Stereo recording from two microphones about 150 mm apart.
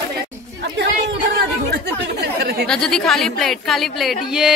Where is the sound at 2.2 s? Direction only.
90° right.